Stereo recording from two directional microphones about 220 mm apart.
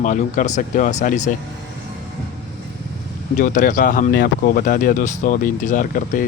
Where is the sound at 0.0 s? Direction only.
35° left (ahead or behind).